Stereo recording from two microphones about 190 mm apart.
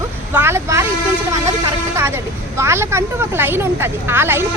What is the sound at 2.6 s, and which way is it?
A woman's voice, 15° right (ahead or behind).